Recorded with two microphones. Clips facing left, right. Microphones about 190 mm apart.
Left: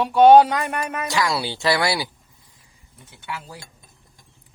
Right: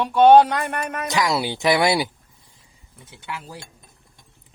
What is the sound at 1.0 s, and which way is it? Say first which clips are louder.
Speech: right 3 dB; 20° right (ahead or behind).